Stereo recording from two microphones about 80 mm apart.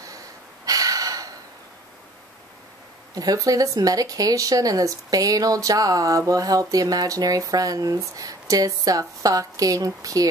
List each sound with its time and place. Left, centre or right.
0.7 s gasp: right
3.2 s speech: right